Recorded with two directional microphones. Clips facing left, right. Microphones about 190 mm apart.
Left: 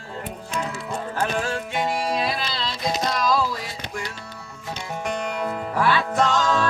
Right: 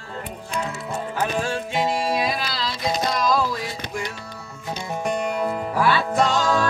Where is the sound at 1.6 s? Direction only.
25° right (ahead or behind).